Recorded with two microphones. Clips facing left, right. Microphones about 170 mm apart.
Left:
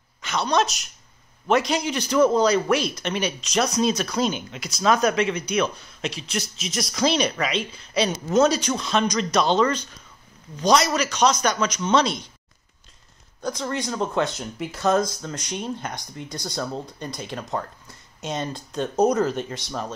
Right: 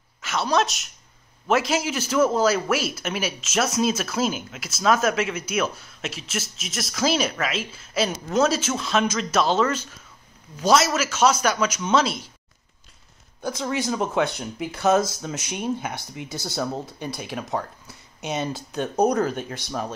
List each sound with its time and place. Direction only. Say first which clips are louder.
0.2 s a woman's voice: even; centre (ahead or behind)
13.4 s speech: right 1 dB; 5° right (ahead or behind)